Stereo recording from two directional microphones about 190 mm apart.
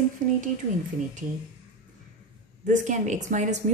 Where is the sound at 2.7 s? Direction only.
40° right (ahead or behind).